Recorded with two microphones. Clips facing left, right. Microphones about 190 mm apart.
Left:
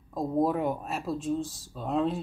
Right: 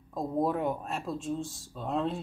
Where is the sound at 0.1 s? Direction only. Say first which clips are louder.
Left 3 dB; centre (ahead or behind).